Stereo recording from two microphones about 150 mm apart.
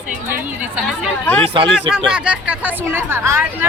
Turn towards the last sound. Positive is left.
turn(degrees=-15)  # may be behind; listen again after turning